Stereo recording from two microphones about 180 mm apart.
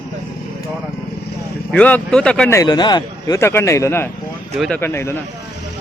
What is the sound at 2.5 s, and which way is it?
A man's voice, 20° left (ahead or behind).